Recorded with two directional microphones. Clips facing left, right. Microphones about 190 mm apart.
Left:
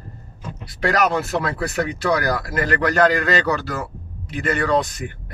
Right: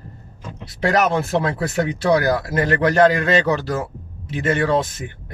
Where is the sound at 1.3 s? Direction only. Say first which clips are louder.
Right 2 dB; 20° right (ahead or behind).